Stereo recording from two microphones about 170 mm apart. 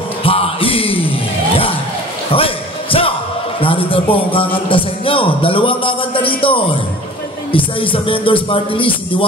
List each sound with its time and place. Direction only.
0.2 s music: 35° left (ahead or behind)
2.3 s a sound: 35° left (ahead or behind)
3.6 s a man's voice: 30° left (ahead or behind)